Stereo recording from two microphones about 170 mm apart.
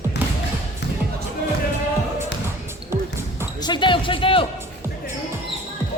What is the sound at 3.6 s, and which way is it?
Speech, 25° left (ahead or behind).